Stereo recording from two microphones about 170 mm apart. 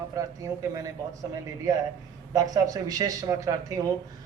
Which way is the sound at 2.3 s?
20° right (ahead or behind).